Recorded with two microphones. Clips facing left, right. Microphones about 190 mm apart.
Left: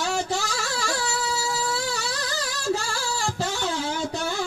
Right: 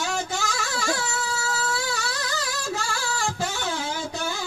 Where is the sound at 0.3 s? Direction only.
35° left (ahead or behind).